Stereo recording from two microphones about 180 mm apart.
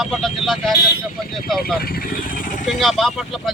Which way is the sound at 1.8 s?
55° left (ahead or behind).